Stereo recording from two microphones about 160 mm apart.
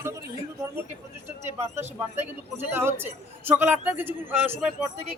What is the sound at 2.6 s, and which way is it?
Speech, 15° right (ahead or behind).